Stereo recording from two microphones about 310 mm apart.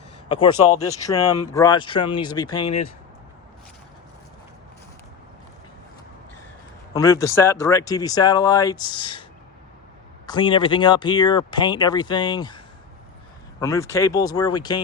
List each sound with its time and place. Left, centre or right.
0.3 s speech: centre
6.9 s speech: centre
10.2 s speech: centre